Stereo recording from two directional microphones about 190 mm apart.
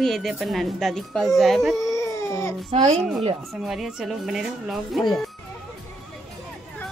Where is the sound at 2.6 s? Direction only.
35° right (ahead or behind).